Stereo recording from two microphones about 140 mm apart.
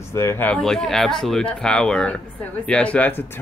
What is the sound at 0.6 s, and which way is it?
Speech, centre (ahead or behind).